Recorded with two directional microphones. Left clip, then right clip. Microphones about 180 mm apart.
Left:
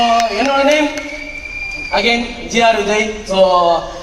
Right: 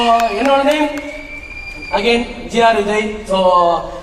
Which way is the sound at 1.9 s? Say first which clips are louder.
Even; 20° left (ahead or behind).